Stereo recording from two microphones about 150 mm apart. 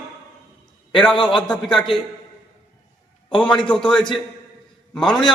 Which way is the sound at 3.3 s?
35° left (ahead or behind).